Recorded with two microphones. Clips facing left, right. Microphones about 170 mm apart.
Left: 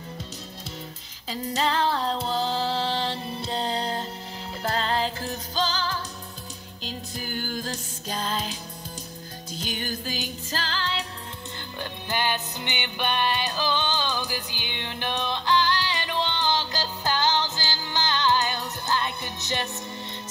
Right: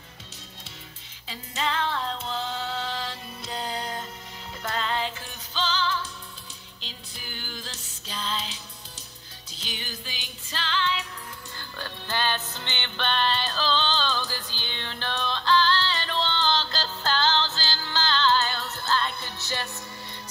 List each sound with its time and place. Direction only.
1.3 s music: 40° left (ahead or behind)
9.6 s music: 45° left (ahead or behind)
11.8 s music: 15° left (ahead or behind)